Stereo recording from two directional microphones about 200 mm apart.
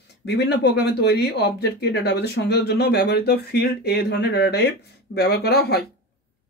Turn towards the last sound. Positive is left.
turn(degrees=50)  # may be behind; listen again after turning